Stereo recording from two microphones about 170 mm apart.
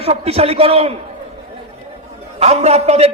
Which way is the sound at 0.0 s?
35° right (ahead or behind).